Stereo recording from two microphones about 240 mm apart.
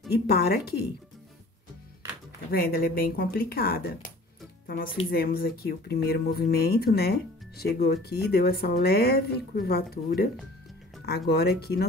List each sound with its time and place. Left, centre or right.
0.1 s speech: left
2.5 s speech: left
11.1 s speech: left